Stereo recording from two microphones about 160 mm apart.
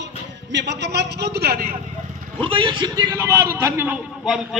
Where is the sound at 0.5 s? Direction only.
90° right.